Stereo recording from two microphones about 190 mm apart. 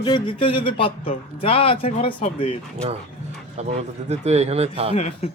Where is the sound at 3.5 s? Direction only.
35° right (ahead or behind).